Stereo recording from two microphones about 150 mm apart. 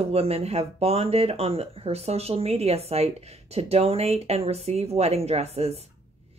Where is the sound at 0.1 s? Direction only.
40° right (ahead or behind).